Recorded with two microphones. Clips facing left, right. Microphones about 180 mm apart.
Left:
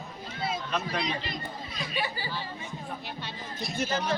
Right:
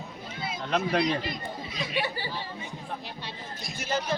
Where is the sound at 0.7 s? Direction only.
60° right (ahead or behind).